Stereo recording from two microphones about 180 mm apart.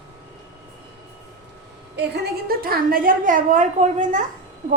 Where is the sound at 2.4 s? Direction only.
55° right (ahead or behind).